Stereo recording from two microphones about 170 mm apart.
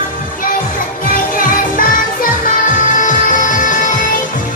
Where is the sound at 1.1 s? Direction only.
55° left (ahead or behind).